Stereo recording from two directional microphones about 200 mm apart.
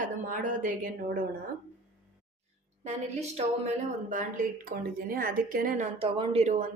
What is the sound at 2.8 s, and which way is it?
Speech, 35° right (ahead or behind).